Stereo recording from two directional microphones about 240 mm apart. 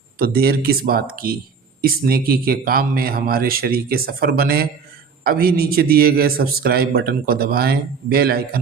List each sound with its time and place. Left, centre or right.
0.2 s a man's voice: right